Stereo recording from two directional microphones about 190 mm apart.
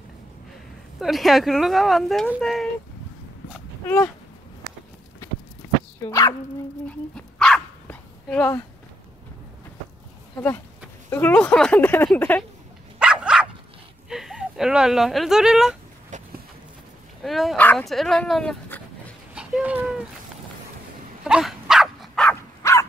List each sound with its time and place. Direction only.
0.9 s speech: centre (ahead or behind)
3.5 s dog: 10° left (ahead or behind)
6.0 s speech: 15° left (ahead or behind)
7.2 s dog: centre (ahead or behind)
10.3 s speech: 5° left (ahead or behind)
13.0 s dog: 5° right (ahead or behind)
14.0 s speech: centre (ahead or behind)
16.1 s a sound: 40° right (ahead or behind)
17.2 s speech: centre (ahead or behind)
19.3 s a sound: 5° right (ahead or behind)
21.2 s dog: centre (ahead or behind); by 22.8 s 15° left (ahead or behind)